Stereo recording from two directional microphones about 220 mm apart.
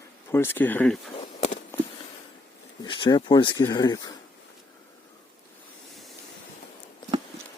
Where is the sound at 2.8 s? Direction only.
20° left (ahead or behind).